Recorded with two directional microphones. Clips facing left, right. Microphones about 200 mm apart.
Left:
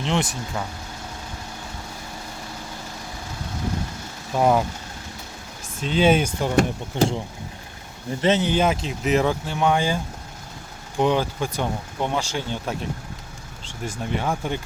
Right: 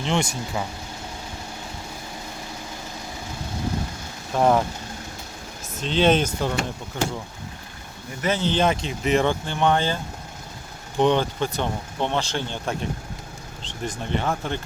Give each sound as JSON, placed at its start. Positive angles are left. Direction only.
{"t": 0.0, "sound": "speech", "side_deg": 0}
{"t": 4.4, "sound": "speech", "side_deg": 5}
{"t": 5.8, "sound": "speech", "side_deg": 5}
{"t": 6.9, "sound": "speech", "side_deg": 25}
{"t": 8.2, "sound": "speech", "side_deg": 25}
{"t": 8.4, "sound": "speech", "side_deg": 5}